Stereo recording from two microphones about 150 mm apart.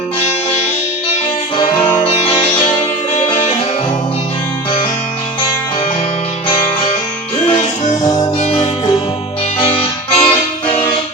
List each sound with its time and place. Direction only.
2.0 s music: 35° left (ahead or behind)
8.0 s music: 25° left (ahead or behind)
8.4 s music: 40° left (ahead or behind)